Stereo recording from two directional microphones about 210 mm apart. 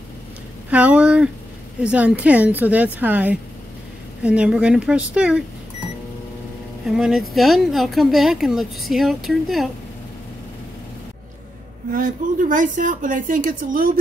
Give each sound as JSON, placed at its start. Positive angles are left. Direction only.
{"t": 0.7, "sound": "a woman's voice", "side_deg": -5}
{"t": 6.9, "sound": "speech", "side_deg": 0}
{"t": 11.9, "sound": "a woman's voice", "side_deg": -40}